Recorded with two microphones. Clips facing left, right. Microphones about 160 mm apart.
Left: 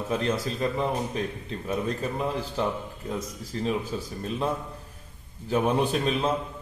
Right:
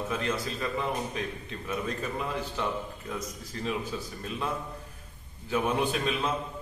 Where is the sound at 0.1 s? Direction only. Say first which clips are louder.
Left 4 dB; 30° left (ahead or behind).